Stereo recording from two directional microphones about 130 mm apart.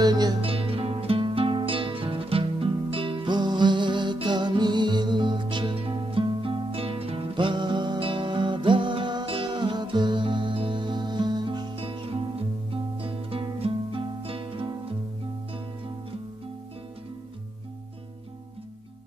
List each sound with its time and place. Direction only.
0.0 s music: 30° right (ahead or behind)